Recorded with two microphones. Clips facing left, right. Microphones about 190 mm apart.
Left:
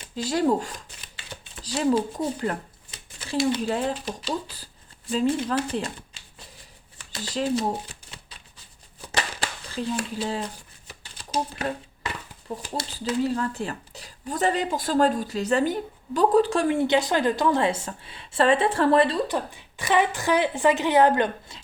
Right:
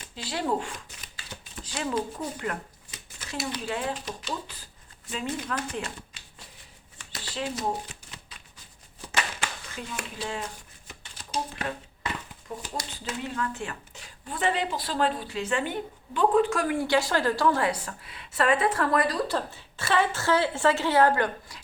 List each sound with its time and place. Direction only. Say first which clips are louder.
0.2 s speech: left 6 dB; 40° left (ahead or behind)
7.2 s speech: left 8 dB; 40° left (ahead or behind)
9.1 s a sound: left 2 dB; 35° left (ahead or behind)
12.7 s speech: left 10 dB; 35° left (ahead or behind)
19.4 s a woman's voice: left 2 dB; 15° left (ahead or behind)